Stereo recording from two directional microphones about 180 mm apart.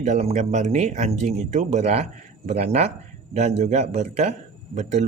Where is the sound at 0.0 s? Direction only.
40° right (ahead or behind).